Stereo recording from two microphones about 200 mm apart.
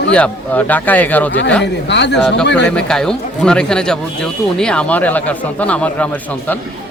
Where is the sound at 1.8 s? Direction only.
60° left (ahead or behind).